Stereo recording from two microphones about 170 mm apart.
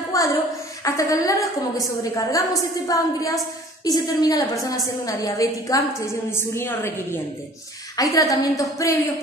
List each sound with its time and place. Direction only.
0.1 s child singing: 20° left (ahead or behind)
0.8 s a woman's voice: 20° left (ahead or behind)